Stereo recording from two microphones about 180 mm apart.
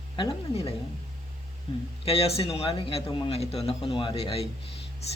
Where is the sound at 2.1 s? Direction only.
35° left (ahead or behind).